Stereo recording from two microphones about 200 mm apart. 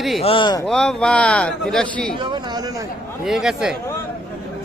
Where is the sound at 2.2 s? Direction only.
20° right (ahead or behind).